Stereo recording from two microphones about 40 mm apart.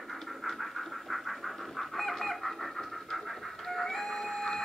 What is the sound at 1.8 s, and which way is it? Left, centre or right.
Pant, centre.